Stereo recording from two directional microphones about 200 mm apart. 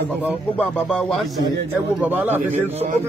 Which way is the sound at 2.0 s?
10° right (ahead or behind).